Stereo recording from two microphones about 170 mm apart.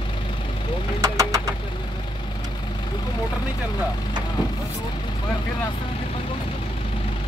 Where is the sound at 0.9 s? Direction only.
20° right (ahead or behind).